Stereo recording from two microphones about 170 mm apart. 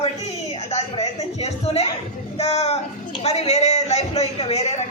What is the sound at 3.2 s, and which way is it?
A man's voice, 40° left (ahead or behind).